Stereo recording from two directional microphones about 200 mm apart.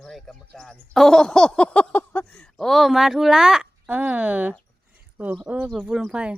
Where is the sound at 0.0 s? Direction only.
Centre (ahead or behind).